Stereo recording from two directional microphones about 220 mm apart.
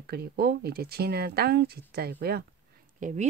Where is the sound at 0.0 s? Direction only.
45° right (ahead or behind).